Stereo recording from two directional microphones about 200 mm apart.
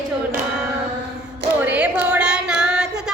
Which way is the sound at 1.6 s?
5° right (ahead or behind).